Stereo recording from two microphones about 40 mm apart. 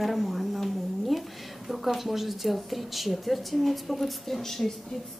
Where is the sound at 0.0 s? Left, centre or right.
Centre.